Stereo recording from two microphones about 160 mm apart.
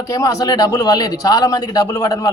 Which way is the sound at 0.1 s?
20° left (ahead or behind).